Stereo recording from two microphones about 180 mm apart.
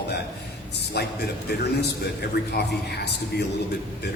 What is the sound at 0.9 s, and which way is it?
A man's voice, 65° left (ahead or behind).